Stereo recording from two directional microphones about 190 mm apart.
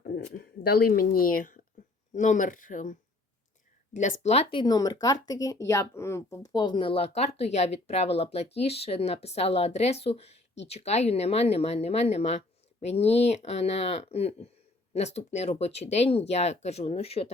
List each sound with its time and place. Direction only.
0.3 s speech: 50° left (ahead or behind); by 4.4 s 35° left (ahead or behind)
4.5 s speech: 20° left (ahead or behind)